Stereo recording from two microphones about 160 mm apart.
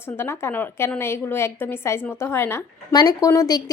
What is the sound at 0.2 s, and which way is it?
A woman's voice, 15° left (ahead or behind).